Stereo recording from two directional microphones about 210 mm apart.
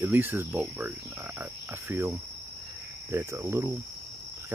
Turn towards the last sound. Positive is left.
turn(degrees=-10)  # may be behind; listen again after turning